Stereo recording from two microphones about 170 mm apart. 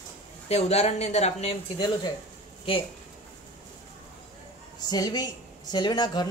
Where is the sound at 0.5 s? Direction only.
40° left (ahead or behind).